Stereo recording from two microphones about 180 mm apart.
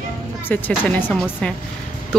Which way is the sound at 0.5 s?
10° left (ahead or behind).